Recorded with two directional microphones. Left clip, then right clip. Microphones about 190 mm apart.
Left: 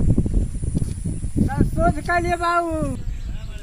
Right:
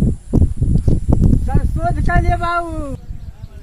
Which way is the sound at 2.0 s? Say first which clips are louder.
Right 1 dB; 45° left (ahead or behind).